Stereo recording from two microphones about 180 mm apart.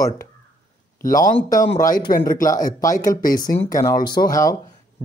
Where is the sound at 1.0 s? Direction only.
50° left (ahead or behind).